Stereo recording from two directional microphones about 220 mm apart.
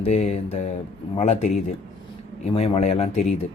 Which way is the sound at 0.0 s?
30° left (ahead or behind).